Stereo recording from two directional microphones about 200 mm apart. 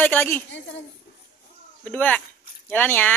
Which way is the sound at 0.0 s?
10° left (ahead or behind).